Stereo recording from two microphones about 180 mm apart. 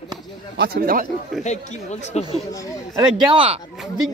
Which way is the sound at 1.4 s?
40° left (ahead or behind).